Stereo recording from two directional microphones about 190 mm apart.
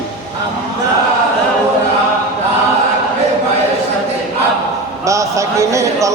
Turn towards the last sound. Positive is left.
turn(degrees=-15)  # may be behind; listen again after turning